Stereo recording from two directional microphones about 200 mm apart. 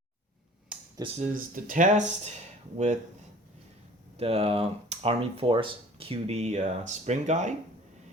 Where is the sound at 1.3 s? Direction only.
40° right (ahead or behind).